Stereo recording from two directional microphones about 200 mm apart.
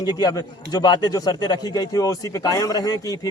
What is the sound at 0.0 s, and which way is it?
A man's voice, 20° left (ahead or behind).